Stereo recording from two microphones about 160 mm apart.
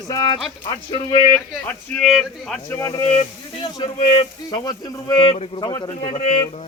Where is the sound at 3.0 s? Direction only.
35° left (ahead or behind).